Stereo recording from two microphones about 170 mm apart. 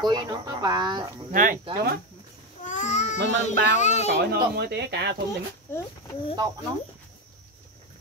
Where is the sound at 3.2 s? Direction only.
90° right.